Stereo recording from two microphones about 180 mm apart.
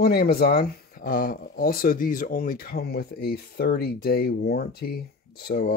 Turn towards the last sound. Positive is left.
turn(degrees=60)  # may be behind; listen again after turning